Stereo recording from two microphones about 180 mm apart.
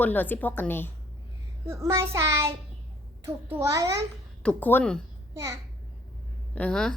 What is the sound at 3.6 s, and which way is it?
Speech, 15° right (ahead or behind).